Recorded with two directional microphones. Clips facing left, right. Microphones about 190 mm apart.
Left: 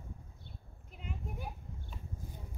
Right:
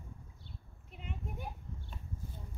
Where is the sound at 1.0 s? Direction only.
Centre (ahead or behind).